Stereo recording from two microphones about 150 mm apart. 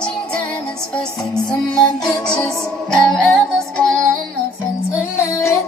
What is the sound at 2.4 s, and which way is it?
Music, 5° left (ahead or behind).